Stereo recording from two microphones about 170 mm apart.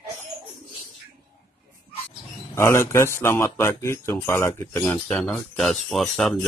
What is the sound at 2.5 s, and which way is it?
Speech, 15° left (ahead or behind).